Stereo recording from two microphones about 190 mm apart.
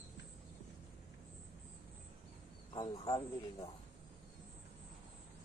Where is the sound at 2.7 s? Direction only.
20° left (ahead or behind).